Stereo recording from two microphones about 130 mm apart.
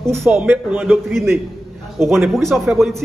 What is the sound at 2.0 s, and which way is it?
Speech, 20° right (ahead or behind).